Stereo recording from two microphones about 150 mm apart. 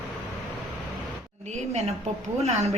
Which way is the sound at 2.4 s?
50° right (ahead or behind).